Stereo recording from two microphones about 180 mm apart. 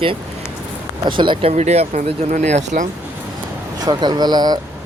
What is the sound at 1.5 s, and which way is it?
Speech, 40° right (ahead or behind).